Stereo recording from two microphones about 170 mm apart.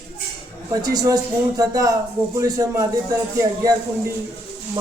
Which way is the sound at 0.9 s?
25° right (ahead or behind).